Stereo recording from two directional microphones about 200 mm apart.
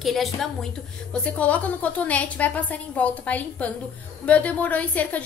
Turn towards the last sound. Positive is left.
turn(degrees=5)  # may be behind; listen again after turning